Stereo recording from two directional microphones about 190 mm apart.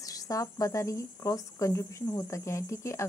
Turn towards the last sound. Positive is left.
turn(degrees=15)  # may be behind; listen again after turning